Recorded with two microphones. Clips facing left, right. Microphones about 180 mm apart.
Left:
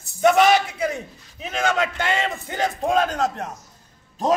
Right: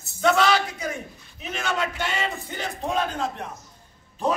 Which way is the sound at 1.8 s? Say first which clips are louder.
Left 4 dB; 90° left.